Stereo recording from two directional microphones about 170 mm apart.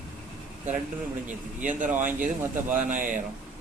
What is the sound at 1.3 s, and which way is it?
Speech, 50° right (ahead or behind).